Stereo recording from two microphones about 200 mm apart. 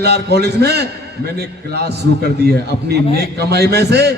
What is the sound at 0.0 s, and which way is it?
A man's voice, 55° right (ahead or behind).